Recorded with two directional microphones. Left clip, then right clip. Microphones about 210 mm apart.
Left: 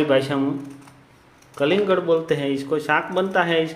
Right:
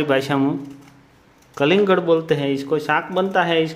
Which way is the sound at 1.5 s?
25° right (ahead or behind).